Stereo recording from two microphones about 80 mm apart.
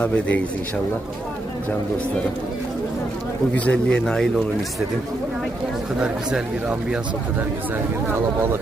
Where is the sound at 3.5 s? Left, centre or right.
Centre.